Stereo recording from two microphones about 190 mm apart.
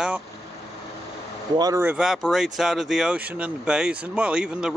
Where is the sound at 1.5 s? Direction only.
20° right (ahead or behind).